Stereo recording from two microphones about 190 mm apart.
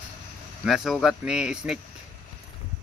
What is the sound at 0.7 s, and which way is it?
Speech, centre (ahead or behind).